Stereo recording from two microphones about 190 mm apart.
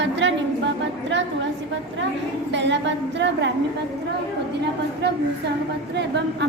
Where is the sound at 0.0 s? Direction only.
70° right (ahead or behind).